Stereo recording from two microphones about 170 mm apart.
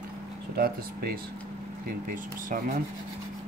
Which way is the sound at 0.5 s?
65° right (ahead or behind).